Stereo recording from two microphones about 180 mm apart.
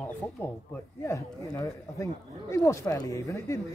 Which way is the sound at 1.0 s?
15° left (ahead or behind).